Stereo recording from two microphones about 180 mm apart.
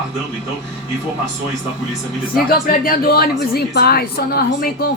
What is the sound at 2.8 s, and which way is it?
A woman's voice, 55° left (ahead or behind).